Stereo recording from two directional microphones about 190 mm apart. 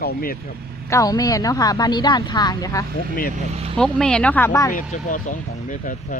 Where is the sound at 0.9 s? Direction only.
20° left (ahead or behind).